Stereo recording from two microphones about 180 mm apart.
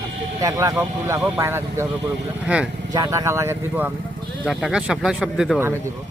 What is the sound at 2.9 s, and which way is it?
Speech, 20° right (ahead or behind).